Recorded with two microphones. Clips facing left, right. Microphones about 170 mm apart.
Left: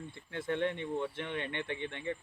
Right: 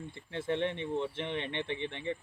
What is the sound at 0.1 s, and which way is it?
Speech, 25° right (ahead or behind).